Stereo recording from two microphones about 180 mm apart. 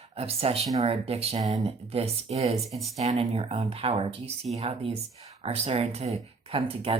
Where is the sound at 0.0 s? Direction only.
35° right (ahead or behind).